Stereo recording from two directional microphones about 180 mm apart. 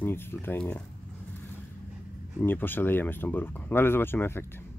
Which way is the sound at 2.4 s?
10° left (ahead or behind).